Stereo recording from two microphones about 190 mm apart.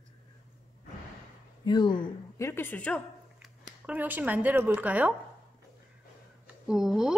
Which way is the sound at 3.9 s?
10° right (ahead or behind).